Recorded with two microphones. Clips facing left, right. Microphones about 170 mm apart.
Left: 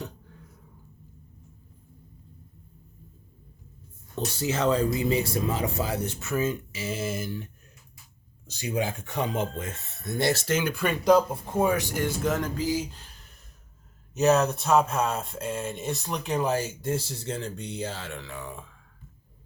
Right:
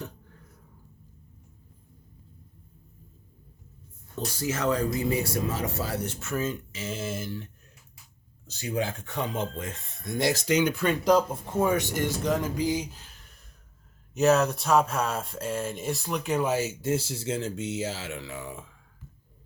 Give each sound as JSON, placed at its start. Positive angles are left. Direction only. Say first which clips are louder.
{"t": 4.1, "sound": "speech", "louder": "left 2 dB", "side_deg": 25}
{"t": 8.5, "sound": "speech", "louder": "left 1 dB", "side_deg": 15}
{"t": 10.3, "sound": "speech", "louder": "right 2 dB", "side_deg": -15}
{"t": 10.8, "sound": "speech", "louder": "left 1 dB", "side_deg": 10}
{"t": 12.5, "sound": "speech", "louder": "even", "side_deg": -20}
{"t": 14.1, "sound": "speech", "louder": "even", "side_deg": 0}